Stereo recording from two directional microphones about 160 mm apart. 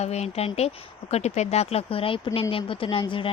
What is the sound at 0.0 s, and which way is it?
Speech, 45° left (ahead or behind).